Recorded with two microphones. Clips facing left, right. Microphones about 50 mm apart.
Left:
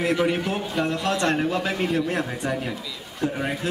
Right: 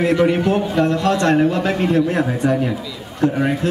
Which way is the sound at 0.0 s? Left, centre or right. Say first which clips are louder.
Right 7 dB; centre.